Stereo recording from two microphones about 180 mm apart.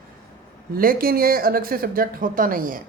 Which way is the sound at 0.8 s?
55° right (ahead or behind).